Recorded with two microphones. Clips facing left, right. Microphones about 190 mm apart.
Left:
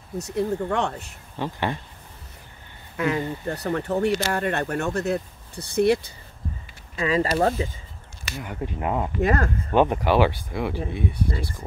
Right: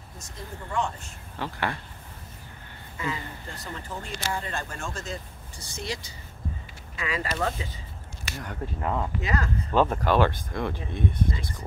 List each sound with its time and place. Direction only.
0.2 s speech: 70° left (ahead or behind)
1.3 s speech: 20° left (ahead or behind)
3.0 s speech: 70° left (ahead or behind)
7.0 s speech: 35° left (ahead or behind)
8.4 s speech: 10° left (ahead or behind)
9.2 s speech: 55° left (ahead or behind)
9.8 s speech: 10° left (ahead or behind)